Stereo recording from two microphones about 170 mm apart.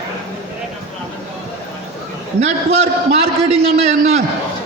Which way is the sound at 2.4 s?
40° right (ahead or behind).